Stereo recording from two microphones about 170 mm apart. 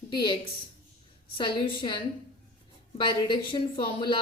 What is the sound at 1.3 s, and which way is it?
Speech, 30° left (ahead or behind).